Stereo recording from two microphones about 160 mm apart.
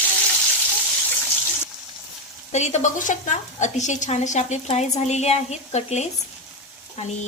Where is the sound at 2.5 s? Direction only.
45° left (ahead or behind).